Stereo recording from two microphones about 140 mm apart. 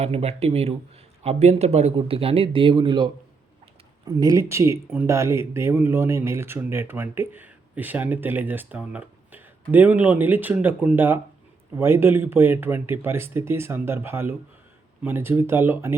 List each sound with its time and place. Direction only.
0.0 s speech: 45° right (ahead or behind); by 16.0 s 15° right (ahead or behind)